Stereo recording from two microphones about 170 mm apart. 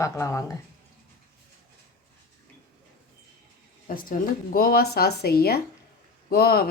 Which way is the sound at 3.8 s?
55° left (ahead or behind).